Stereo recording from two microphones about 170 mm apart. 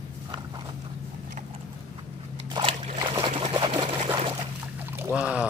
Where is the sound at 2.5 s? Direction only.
30° right (ahead or behind).